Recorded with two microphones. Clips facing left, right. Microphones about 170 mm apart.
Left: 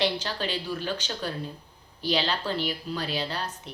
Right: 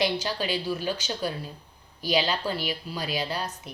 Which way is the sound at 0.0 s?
10° right (ahead or behind).